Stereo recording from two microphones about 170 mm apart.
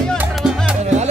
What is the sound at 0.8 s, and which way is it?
Music, 40° right (ahead or behind).